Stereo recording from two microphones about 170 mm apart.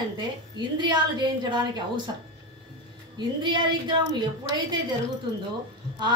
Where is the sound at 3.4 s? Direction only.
25° right (ahead or behind).